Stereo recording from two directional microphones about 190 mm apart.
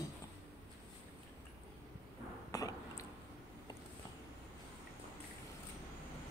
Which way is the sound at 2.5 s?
20° left (ahead or behind).